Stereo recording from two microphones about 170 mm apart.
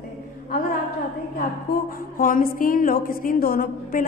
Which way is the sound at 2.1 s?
55° left (ahead or behind).